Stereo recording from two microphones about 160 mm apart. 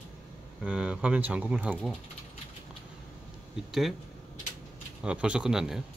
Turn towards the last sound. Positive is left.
turn(degrees=-5)  # may be behind; listen again after turning